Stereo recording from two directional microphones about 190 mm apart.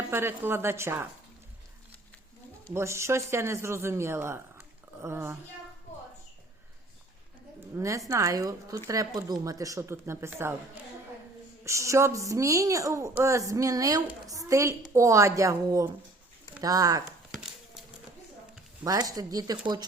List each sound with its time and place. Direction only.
0.1 s a woman's voice: 10° right (ahead or behind)
2.7 s a woman's voice: 15° right (ahead or behind)
7.8 s a woman's voice: 15° right (ahead or behind)
18.9 s speech: 20° right (ahead or behind)